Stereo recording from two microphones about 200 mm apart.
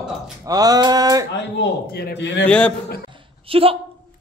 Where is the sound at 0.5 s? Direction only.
20° right (ahead or behind).